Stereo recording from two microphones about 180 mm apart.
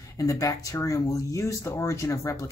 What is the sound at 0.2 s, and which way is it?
Speech, 20° left (ahead or behind).